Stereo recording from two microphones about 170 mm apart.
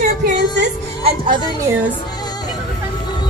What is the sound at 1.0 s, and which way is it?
Speech, 30° right (ahead or behind).